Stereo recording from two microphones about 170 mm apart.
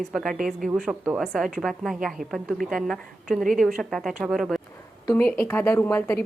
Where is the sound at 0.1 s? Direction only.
Centre (ahead or behind).